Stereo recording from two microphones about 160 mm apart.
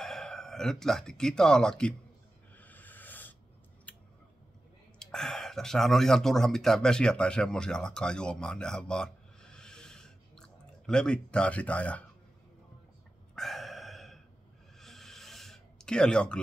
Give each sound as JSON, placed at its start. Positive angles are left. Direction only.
{"t": 0.0, "sound": "speech", "side_deg": 0}
{"t": 2.5, "sound": "music", "side_deg": 10}
{"t": 3.9, "sound": "scissors", "side_deg": 10}
{"t": 4.9, "sound": "speech", "side_deg": 5}
{"t": 13.3, "sound": "a sound", "side_deg": 0}